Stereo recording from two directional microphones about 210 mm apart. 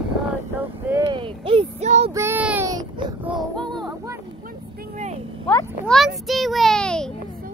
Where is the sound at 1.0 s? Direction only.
25° right (ahead or behind).